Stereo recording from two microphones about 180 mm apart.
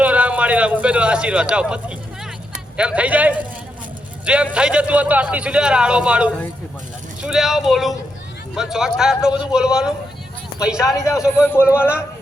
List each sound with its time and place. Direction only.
0.0 s a man's voice: 5° right (ahead or behind)
4.5 s a man's voice: 5° right (ahead or behind)
10.8 s a man's voice: 20° left (ahead or behind)
11.6 s speech: 5° right (ahead or behind)